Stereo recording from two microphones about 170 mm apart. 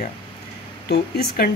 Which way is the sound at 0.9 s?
65° left (ahead or behind).